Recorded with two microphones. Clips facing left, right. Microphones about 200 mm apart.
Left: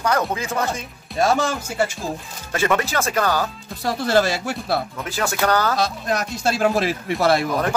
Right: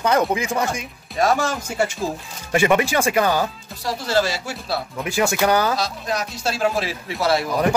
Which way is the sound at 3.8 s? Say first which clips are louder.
Left 2 dB; 55° left (ahead or behind).